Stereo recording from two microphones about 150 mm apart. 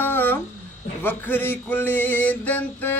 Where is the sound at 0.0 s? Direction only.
15° left (ahead or behind).